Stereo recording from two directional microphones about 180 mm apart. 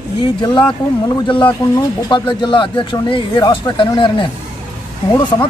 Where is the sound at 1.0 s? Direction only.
25° left (ahead or behind).